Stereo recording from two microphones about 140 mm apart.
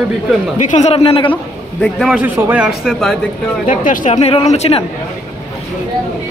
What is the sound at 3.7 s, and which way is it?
A woman's voice, 65° left (ahead or behind).